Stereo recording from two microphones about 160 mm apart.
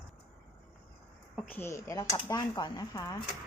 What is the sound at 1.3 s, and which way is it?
Speech, 5° left (ahead or behind).